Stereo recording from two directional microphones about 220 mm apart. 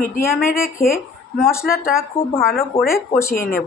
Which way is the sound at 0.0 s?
40° left (ahead or behind).